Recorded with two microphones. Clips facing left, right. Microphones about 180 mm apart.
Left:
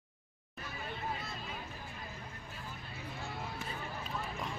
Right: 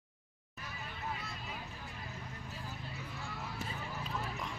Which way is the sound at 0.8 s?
30° left (ahead or behind).